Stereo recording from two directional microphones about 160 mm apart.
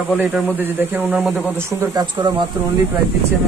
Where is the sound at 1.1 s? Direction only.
Centre (ahead or behind).